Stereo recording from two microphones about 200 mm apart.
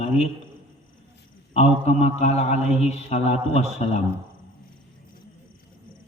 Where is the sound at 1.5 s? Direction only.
30° left (ahead or behind).